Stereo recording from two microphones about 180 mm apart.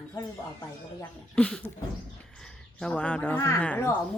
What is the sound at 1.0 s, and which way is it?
Speech, 5° left (ahead or behind).